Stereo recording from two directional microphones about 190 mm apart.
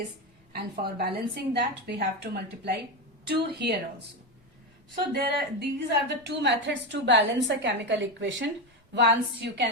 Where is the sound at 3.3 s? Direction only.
60° right (ahead or behind).